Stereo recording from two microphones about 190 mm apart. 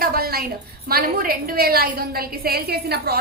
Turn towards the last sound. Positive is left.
turn(degrees=-55)  # may be behind; listen again after turning